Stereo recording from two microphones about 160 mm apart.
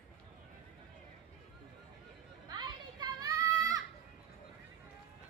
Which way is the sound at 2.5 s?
25° right (ahead or behind).